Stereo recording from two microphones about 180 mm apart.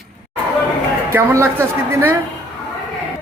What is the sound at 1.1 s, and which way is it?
Speech, 15° right (ahead or behind).